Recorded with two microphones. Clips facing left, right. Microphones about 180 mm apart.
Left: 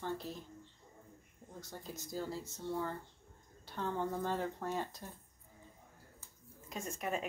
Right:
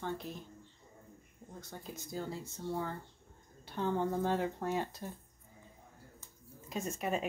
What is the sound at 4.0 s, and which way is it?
Speech, 15° right (ahead or behind).